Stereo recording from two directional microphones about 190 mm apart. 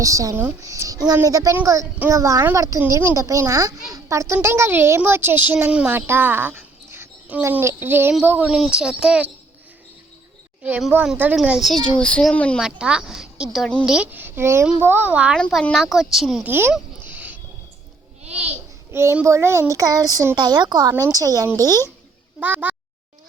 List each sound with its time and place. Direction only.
0.0 s a woman's voice: 15° right (ahead or behind)
10.6 s a child's voice: 5° right (ahead or behind)
15.4 s speech: 5° left (ahead or behind)
18.2 s babbling: 35° right (ahead or behind)
18.9 s a woman's voice: 15° right (ahead or behind)
22.4 s speech: 10° right (ahead or behind)